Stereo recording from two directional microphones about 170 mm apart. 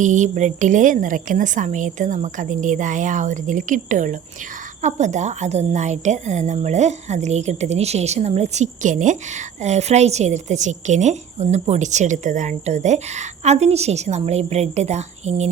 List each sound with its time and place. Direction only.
0.0 s a woman's voice: 45° right (ahead or behind)